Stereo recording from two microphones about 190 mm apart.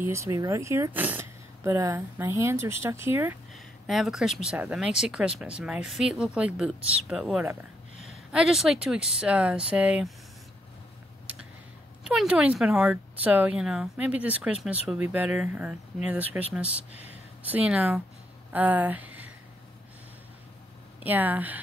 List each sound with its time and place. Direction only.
0.0 s speech: 15° right (ahead or behind)
3.5 s speech: centre (ahead or behind)
12.0 s speech: 5° right (ahead or behind)
16.9 s a sound: 35° left (ahead or behind)
17.5 s speech: 5° right (ahead or behind)
21.0 s speech: 10° right (ahead or behind)